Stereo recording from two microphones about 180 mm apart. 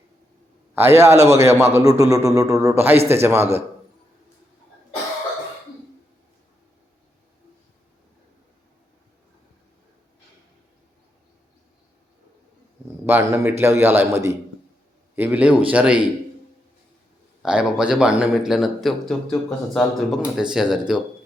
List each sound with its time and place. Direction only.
0.8 s a man's voice: 15° right (ahead or behind)
13.1 s a man's voice: 10° right (ahead or behind)
17.4 s speech: 5° right (ahead or behind)